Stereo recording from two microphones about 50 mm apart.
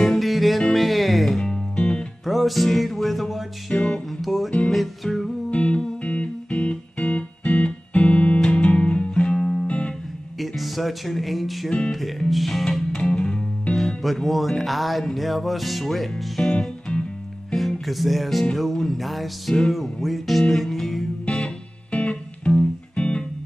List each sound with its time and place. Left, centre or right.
0.0 s music: centre
1.4 s music: left
2.2 s music: centre
3.7 s music: left
4.2 s music: centre
5.5 s music: left
10.4 s music: centre
12.9 s music: centre
13.7 s music: centre
16.4 s music: left
17.5 s music: centre
21.9 s music: left